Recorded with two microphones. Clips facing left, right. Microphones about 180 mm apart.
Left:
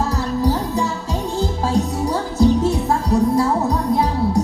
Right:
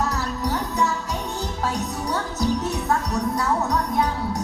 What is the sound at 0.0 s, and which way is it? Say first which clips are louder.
Music: left 6 dB; 30° left (ahead or behind).